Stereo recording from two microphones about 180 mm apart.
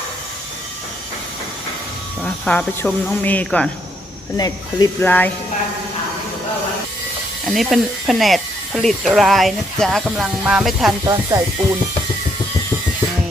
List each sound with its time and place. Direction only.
2.2 s speech: 5° left (ahead or behind)
4.4 s speech: 20° left (ahead or behind)
5.0 s speech: 10° left (ahead or behind)
7.4 s speech: centre (ahead or behind)
11.0 s speech: 15° right (ahead or behind)